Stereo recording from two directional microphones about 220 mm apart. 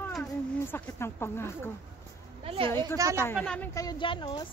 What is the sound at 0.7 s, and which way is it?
Speech, 10° left (ahead or behind).